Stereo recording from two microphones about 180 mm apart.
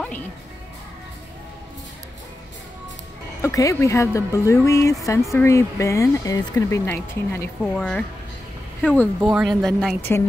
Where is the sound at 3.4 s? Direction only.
15° left (ahead or behind).